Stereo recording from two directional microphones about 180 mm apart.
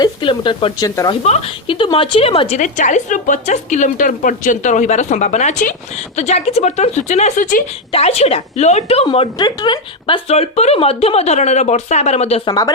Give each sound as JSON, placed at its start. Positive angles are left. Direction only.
{"t": 0.0, "sound": "a woman's voice", "side_deg": 25}
{"t": 1.2, "sound": "a woman's voice", "side_deg": 35}
{"t": 2.6, "sound": "a woman's voice", "side_deg": 45}
{"t": 12.5, "sound": "a woman's voice", "side_deg": 20}